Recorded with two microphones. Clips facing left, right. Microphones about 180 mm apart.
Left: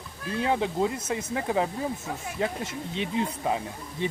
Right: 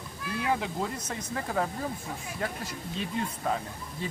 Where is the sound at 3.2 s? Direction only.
15° left (ahead or behind).